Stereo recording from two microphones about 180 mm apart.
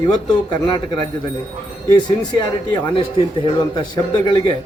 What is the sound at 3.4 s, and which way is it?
Speech, 25° left (ahead or behind).